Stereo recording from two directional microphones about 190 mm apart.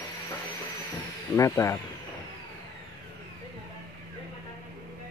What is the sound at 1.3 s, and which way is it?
Speech, 15° left (ahead or behind).